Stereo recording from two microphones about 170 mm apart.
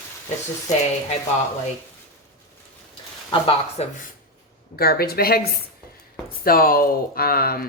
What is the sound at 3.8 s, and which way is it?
Speech, 40° left (ahead or behind).